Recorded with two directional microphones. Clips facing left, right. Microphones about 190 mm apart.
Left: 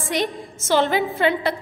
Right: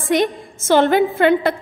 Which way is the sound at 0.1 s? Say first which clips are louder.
Right 7 dB; 55° right (ahead or behind).